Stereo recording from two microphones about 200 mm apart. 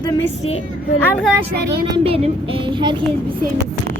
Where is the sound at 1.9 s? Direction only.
30° right (ahead or behind).